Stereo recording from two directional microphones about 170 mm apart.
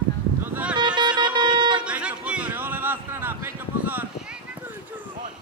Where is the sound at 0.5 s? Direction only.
5° right (ahead or behind).